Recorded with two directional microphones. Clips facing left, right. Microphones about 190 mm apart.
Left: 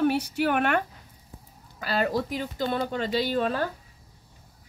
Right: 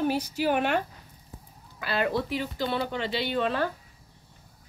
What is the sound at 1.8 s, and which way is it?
Speech, 40° left (ahead or behind).